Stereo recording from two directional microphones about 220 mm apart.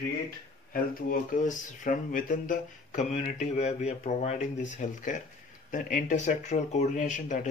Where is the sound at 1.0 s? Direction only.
35° left (ahead or behind).